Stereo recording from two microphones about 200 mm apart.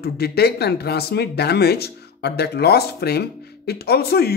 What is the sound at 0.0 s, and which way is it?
Speech, 50° left (ahead or behind).